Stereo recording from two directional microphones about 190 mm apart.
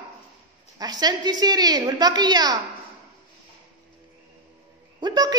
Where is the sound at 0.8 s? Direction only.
20° right (ahead or behind).